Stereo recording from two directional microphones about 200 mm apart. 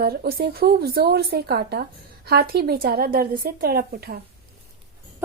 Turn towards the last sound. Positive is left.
turn(degrees=-50)  # may be behind; listen again after turning